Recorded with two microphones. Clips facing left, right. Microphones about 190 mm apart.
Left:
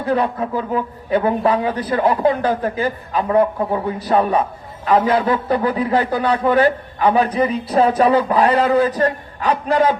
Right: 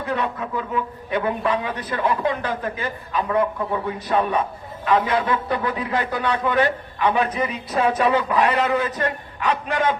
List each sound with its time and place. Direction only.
0.0 s a man's voice: 35° left (ahead or behind)